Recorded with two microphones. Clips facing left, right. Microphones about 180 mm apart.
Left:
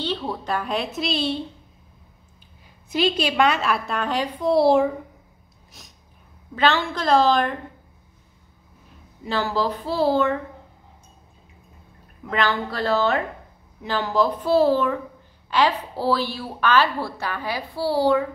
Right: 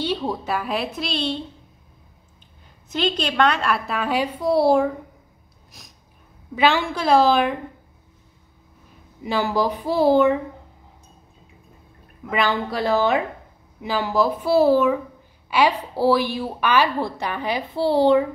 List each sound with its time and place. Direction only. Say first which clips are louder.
0.0 s a woman's voice: right 3 dB; 10° right (ahead or behind); by 1.4 s 5° left (ahead or behind)
2.9 s a woman's voice: left 2 dB; 5° left (ahead or behind)
6.5 s a woman's voice: right 2 dB; 10° right (ahead or behind)
9.2 s a woman's voice: right 2 dB; 15° right (ahead or behind)
12.3 s a woman's voice: right 1 dB; 15° right (ahead or behind)